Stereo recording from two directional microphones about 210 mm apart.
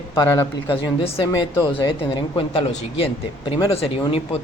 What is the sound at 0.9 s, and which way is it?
Speech, 30° left (ahead or behind).